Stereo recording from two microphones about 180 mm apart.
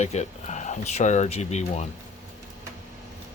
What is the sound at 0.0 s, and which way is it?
Speech, 40° left (ahead or behind).